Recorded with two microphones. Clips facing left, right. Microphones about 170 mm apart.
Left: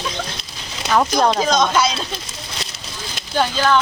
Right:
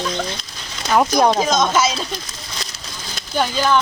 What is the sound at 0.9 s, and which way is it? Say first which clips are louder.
Speech: right 1 dB; 15° right (ahead or behind).